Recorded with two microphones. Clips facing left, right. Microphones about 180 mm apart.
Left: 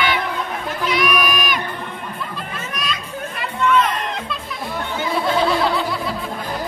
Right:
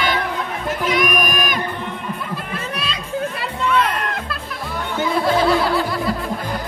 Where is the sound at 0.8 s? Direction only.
50° right (ahead or behind).